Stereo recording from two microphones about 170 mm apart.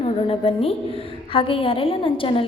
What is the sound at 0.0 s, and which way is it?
A woman's voice, 35° left (ahead or behind).